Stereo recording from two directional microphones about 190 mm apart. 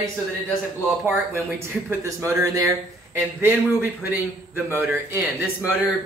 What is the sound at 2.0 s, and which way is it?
A man's voice, 15° right (ahead or behind).